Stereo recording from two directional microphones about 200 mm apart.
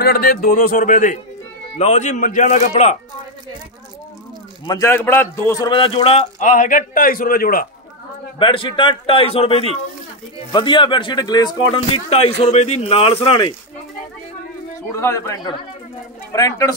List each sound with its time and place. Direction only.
0.0 s a man's voice: 50° left (ahead or behind); by 3.0 s 35° left (ahead or behind)
4.6 s speech: 15° left (ahead or behind); by 7.6 s 45° left (ahead or behind)
8.4 s speech: 25° left (ahead or behind)
14.8 s speech: 15° left (ahead or behind)